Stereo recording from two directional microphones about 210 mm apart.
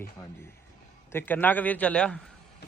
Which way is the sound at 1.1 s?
10° left (ahead or behind).